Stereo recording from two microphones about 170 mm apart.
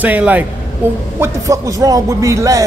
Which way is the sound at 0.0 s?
10° right (ahead or behind).